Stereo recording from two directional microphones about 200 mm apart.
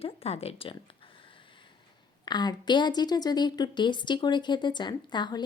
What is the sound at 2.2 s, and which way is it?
A woman's voice, 20° left (ahead or behind).